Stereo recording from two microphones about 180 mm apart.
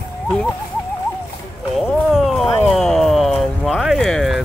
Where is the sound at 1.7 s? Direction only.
Centre (ahead or behind).